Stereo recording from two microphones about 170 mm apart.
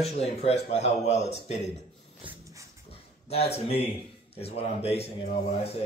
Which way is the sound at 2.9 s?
35° left (ahead or behind).